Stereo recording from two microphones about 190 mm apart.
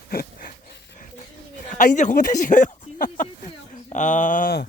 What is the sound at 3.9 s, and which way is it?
Speech, 40° left (ahead or behind).